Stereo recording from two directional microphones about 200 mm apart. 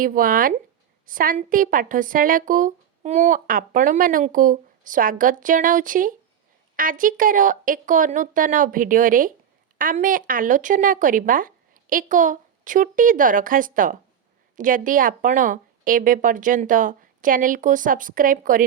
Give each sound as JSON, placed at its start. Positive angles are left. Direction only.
{"t": 0.0, "sound": "a woman's voice", "side_deg": -45}